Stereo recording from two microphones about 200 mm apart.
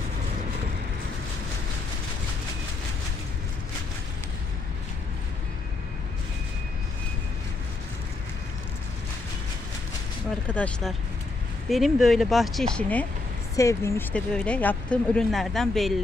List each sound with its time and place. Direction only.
10.5 s speech: 5° left (ahead or behind)
13.6 s speech: 15° left (ahead or behind)